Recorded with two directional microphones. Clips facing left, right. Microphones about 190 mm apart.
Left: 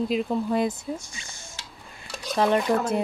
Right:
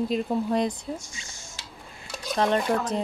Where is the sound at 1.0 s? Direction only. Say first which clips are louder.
Left 1 dB; 60° left (ahead or behind).